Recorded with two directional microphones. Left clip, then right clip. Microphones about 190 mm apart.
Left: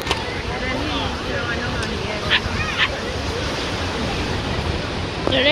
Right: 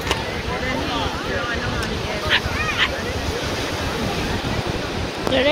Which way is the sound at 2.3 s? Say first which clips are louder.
Even; 30° right (ahead or behind).